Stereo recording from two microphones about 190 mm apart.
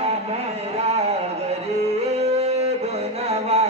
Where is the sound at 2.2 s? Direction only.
35° right (ahead or behind).